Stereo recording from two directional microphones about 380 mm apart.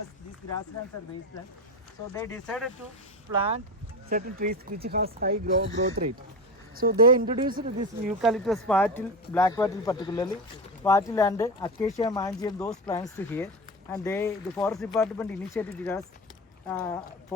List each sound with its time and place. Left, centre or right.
2.1 s speech: centre
3.3 s speech: centre
8.2 s speech: centre